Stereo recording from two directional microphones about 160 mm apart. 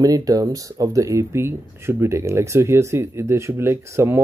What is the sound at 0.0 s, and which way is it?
Speech, 20° right (ahead or behind).